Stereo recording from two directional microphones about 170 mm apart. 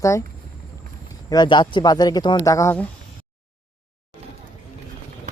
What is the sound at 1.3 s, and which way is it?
Speech, 25° left (ahead or behind).